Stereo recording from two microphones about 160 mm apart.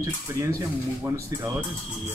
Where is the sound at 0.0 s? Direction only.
20° right (ahead or behind).